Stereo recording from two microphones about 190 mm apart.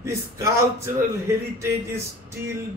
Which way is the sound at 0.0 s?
15° right (ahead or behind).